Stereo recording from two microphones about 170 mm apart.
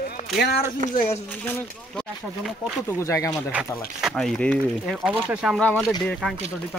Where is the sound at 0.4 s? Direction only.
70° left (ahead or behind).